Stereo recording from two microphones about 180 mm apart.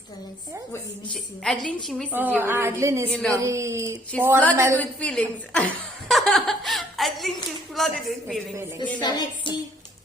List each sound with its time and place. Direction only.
1.1 s a woman's voice: 5° left (ahead or behind)
2.1 s a woman's voice: 10° right (ahead or behind)
3.1 s a woman's voice: 5° left (ahead or behind)
3.3 s a woman's voice: 15° right (ahead or behind)
4.1 s a woman's voice: 5° left (ahead or behind)
4.5 s a woman's voice: 15° right (ahead or behind)
4.8 s a woman's voice: 5° left (ahead or behind)
6.1 s chuckle: centre (ahead or behind)
7.8 s a woman's voice: centre (ahead or behind)
9.0 s music: 25° left (ahead or behind)